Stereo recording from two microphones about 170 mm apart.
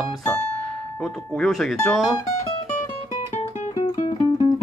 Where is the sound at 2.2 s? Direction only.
40° left (ahead or behind).